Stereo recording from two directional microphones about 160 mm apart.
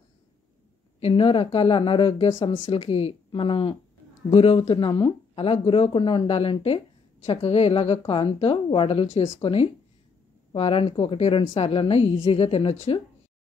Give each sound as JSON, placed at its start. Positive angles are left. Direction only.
{"t": 1.0, "sound": "speech", "side_deg": 35}